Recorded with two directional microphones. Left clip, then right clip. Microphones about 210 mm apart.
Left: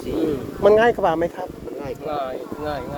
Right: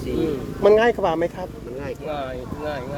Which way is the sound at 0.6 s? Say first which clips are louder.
Left 1 dB; 10° right (ahead or behind).